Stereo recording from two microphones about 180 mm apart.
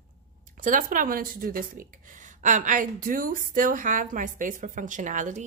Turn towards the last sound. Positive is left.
turn(degrees=-45)  # may be behind; listen again after turning